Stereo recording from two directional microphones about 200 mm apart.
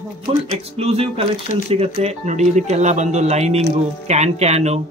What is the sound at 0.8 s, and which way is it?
Speech, 30° right (ahead or behind).